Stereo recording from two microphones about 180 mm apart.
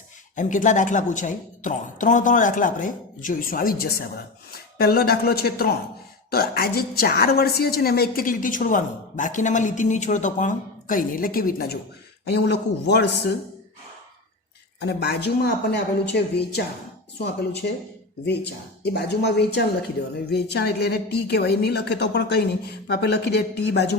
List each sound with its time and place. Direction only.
0.3 s a woman's voice: 45° left (ahead or behind)
12.3 s speech: 65° left (ahead or behind)
14.8 s a woman's voice: 65° left (ahead or behind)